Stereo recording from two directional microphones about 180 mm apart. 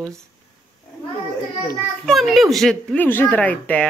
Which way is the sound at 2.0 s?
Centre (ahead or behind).